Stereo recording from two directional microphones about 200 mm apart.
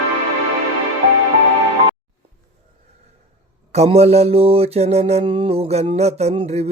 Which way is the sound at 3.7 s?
30° right (ahead or behind).